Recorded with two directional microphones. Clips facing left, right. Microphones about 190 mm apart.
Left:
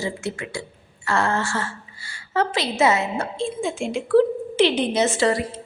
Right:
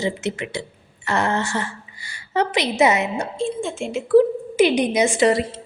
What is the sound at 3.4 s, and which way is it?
A woman's voice, centre (ahead or behind).